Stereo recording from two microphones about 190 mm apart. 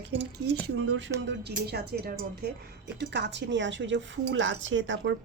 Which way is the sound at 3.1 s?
70° right (ahead or behind).